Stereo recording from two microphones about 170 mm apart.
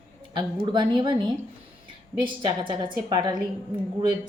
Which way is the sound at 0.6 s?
25° right (ahead or behind).